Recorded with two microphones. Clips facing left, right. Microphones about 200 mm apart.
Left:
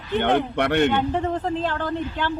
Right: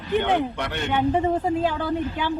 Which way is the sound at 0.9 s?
10° right (ahead or behind).